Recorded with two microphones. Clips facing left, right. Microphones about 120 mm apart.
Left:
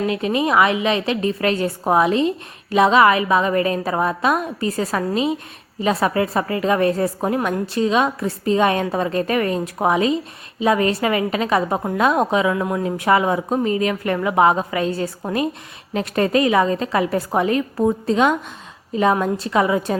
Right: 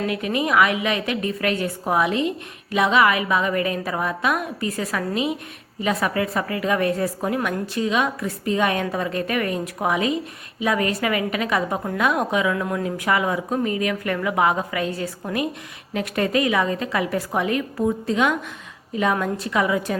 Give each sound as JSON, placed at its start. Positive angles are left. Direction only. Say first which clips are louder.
{"t": 0.1, "sound": "a woman's voice", "louder": "left 3 dB", "side_deg": 25}